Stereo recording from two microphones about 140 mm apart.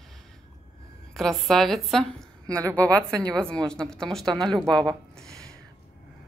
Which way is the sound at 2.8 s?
20° right (ahead or behind).